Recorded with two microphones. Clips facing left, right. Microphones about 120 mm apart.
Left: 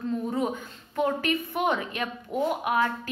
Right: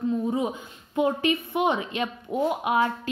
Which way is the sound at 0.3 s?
20° right (ahead or behind).